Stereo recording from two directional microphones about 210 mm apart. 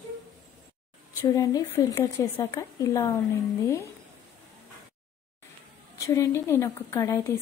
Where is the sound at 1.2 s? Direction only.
15° left (ahead or behind).